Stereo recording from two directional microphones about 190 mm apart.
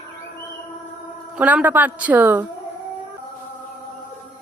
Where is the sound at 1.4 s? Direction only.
5° right (ahead or behind).